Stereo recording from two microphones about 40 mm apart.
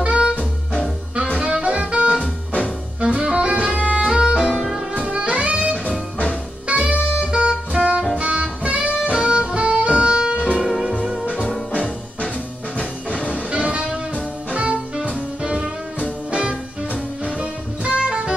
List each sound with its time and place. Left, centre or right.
0.0 s music: right
1.4 s saxophone: right
3.0 s music: right
4.3 s saxophone: centre
4.9 s music: right
6.7 s saxophone: right
8.2 s music: right
10.6 s music: centre
11.7 s music: left
13.5 s music: right
14.5 s jazz: right
15.4 s music: right